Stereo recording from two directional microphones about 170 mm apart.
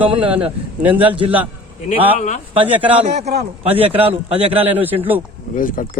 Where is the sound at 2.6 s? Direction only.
10° right (ahead or behind).